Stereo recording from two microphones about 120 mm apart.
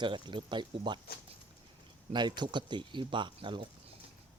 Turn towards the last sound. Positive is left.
turn(degrees=-40)  # may be behind; listen again after turning